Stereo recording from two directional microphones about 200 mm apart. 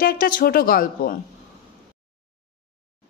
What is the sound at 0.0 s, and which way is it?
A woman's voice, 45° left (ahead or behind).